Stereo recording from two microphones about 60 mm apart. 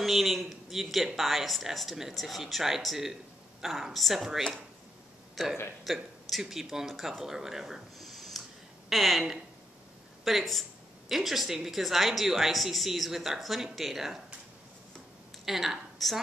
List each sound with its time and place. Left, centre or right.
0.0 s a woman's voice: centre
10.2 s speech: centre
15.4 s speech: centre